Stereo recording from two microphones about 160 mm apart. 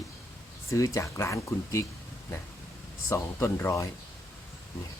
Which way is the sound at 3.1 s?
15° left (ahead or behind).